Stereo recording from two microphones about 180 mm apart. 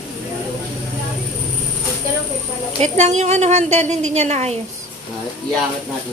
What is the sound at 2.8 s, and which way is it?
A woman's voice, 40° right (ahead or behind).